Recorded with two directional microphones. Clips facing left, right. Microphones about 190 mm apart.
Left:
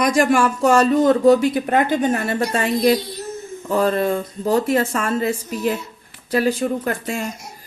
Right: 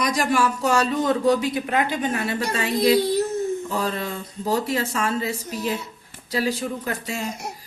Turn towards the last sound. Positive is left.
turn(degrees=55)  # may be behind; listen again after turning